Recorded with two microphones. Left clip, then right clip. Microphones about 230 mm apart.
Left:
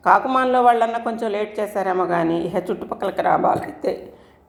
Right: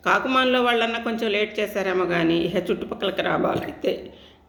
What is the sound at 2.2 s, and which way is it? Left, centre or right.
Speech, centre.